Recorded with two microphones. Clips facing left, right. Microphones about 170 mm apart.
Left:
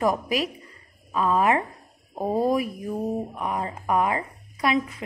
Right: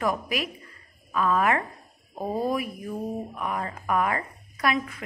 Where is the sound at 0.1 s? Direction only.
35° left (ahead or behind).